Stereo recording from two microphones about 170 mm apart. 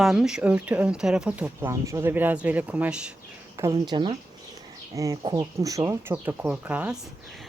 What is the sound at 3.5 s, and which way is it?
Speech, 20° right (ahead or behind).